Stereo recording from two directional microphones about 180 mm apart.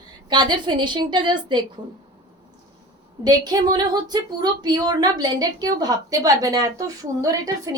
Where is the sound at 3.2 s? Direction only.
20° right (ahead or behind).